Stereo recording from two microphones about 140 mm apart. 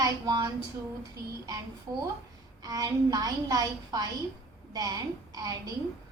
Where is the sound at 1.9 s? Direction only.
25° right (ahead or behind).